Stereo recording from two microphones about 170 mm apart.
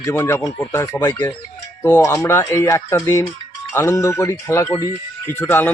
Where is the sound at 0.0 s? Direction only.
15° left (ahead or behind).